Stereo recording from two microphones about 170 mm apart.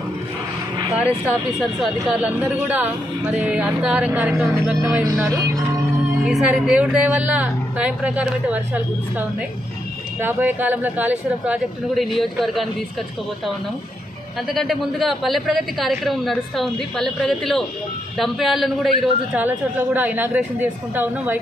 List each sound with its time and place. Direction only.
0.9 s speech: 5° right (ahead or behind)
5.2 s speech: 20° right (ahead or behind)
6.2 s speech: 5° right (ahead or behind)
10.2 s speech: 10° right (ahead or behind)
14.5 s a man's voice: centre (ahead or behind)